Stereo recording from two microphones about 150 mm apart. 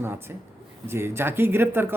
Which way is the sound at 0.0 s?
15° right (ahead or behind).